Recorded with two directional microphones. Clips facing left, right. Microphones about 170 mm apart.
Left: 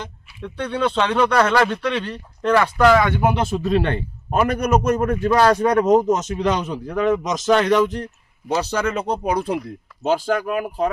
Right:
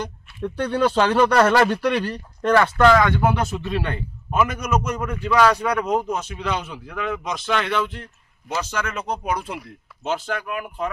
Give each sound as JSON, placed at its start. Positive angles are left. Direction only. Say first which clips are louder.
{"t": 0.4, "sound": "a man's voice", "louder": "right 2 dB", "side_deg": -5}
{"t": 2.5, "sound": "speech", "louder": "left 1 dB", "side_deg": 5}
{"t": 3.3, "sound": "a man's voice", "louder": "left 5 dB", "side_deg": 30}
{"t": 4.8, "sound": "a man's voice", "louder": "left 7 dB", "side_deg": 50}